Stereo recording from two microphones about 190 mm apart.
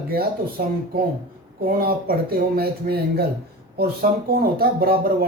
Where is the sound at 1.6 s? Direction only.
50° right (ahead or behind).